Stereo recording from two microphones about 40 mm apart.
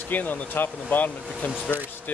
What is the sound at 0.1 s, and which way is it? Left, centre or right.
Speech, left.